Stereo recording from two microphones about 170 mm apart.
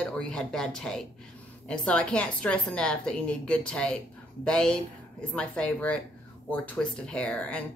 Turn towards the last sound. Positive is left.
turn(degrees=5)  # may be behind; listen again after turning